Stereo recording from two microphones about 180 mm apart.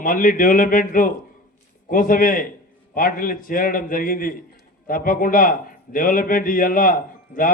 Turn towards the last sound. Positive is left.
turn(degrees=50)  # may be behind; listen again after turning